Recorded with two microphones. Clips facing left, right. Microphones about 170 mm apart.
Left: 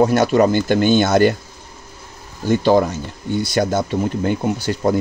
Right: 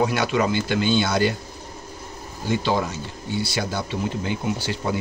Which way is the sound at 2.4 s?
45° left (ahead or behind).